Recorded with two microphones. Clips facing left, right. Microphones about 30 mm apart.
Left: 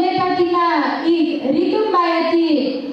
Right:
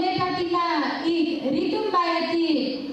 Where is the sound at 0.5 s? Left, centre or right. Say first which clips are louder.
Left 7 dB; left.